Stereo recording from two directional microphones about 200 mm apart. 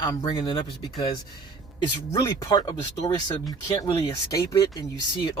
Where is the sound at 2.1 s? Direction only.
20° left (ahead or behind).